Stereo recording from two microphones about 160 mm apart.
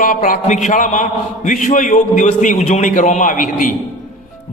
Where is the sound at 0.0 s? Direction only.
60° left (ahead or behind).